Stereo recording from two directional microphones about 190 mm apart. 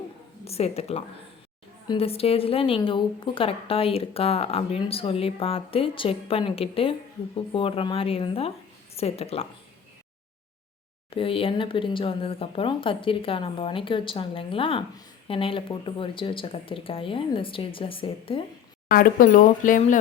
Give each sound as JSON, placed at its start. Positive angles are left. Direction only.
{"t": 0.4, "sound": "speech", "side_deg": 35}
{"t": 11.1, "sound": "speech", "side_deg": 30}
{"t": 18.9, "sound": "speech", "side_deg": 45}